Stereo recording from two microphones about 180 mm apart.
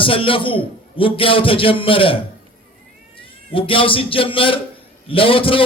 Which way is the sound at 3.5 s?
30° left (ahead or behind).